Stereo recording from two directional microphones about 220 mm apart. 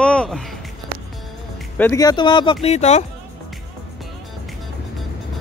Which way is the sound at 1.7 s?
10° left (ahead or behind).